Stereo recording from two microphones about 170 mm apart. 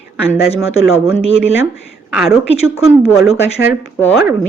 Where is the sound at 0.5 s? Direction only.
35° left (ahead or behind).